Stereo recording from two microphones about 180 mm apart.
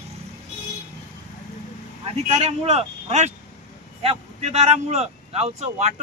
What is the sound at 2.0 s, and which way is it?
Speech, 35° right (ahead or behind).